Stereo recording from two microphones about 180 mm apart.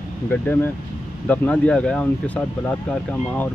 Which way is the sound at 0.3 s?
10° left (ahead or behind).